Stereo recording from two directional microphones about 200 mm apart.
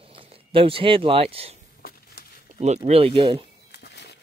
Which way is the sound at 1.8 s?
50° left (ahead or behind).